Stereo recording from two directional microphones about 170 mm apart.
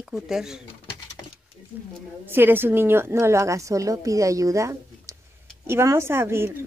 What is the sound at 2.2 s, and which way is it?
A woman's voice, 10° right (ahead or behind).